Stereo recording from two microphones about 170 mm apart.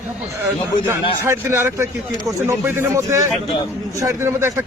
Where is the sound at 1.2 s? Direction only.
15° right (ahead or behind).